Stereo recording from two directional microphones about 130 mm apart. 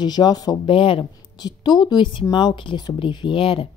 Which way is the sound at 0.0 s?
35° left (ahead or behind).